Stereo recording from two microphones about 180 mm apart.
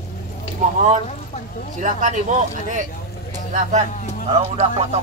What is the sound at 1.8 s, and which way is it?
Speech, 45° right (ahead or behind).